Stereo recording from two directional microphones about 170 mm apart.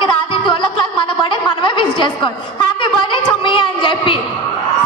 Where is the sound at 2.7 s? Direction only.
30° left (ahead or behind).